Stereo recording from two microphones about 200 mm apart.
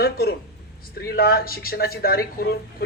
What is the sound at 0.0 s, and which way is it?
Speech, 50° left (ahead or behind).